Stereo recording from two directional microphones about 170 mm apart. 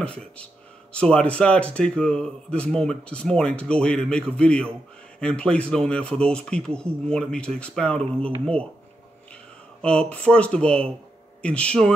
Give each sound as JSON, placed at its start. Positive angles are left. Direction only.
{"t": 0.0, "sound": "speech", "side_deg": 5}
{"t": 9.3, "sound": "speech", "side_deg": 5}